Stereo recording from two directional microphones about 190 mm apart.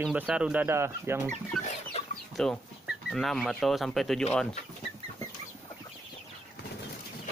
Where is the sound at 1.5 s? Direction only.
Centre (ahead or behind).